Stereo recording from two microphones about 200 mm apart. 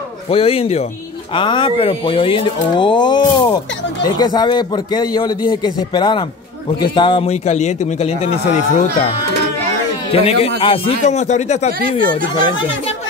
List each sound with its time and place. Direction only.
0.3 s a man's voice: 30° left (ahead or behind)
10.1 s a man's voice: 30° left (ahead or behind)
12.4 s speech: 20° left (ahead or behind)